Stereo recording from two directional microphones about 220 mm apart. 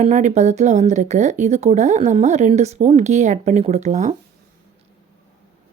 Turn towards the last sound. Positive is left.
turn(degrees=-35)  # may be behind; listen again after turning